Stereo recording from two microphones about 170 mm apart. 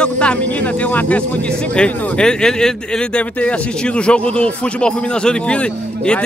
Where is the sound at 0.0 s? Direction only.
5° left (ahead or behind).